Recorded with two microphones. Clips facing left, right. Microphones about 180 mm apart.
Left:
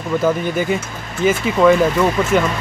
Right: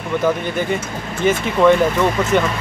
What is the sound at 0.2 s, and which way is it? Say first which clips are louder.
Speech: even; 5° left (ahead or behind).